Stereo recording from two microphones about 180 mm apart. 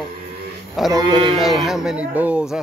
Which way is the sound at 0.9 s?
25° right (ahead or behind).